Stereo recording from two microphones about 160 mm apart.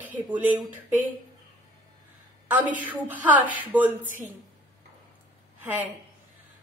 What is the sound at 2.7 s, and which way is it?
Speech, 10° right (ahead or behind).